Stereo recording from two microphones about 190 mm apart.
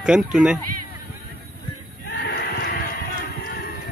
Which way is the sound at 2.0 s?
60° left (ahead or behind).